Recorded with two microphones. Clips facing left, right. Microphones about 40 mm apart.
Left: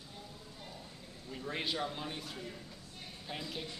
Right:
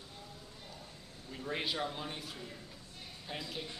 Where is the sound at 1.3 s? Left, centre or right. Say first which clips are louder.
Even; centre.